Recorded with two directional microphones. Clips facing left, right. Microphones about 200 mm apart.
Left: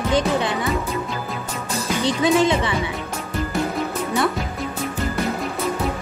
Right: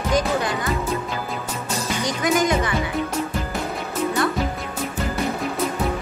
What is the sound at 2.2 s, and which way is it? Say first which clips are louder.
Speech: left 3 dB; 25° left (ahead or behind).